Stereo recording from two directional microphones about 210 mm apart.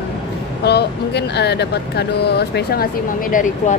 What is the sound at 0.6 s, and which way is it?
Speech, 50° left (ahead or behind).